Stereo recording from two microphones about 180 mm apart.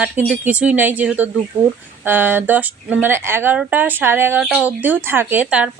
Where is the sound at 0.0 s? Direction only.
10° right (ahead or behind).